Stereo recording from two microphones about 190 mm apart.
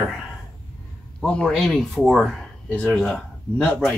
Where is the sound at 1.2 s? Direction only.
5° left (ahead or behind).